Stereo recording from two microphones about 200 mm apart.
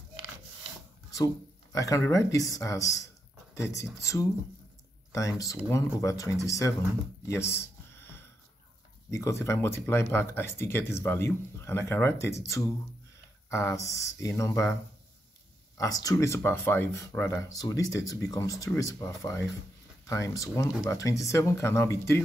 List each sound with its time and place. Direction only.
1.1 s speech: 15° left (ahead or behind)
4.0 s speech: 15° left (ahead or behind)
7.2 s a sound: 15° left (ahead or behind)
9.1 s speech: 15° left (ahead or behind)
15.8 s speech: 20° left (ahead or behind)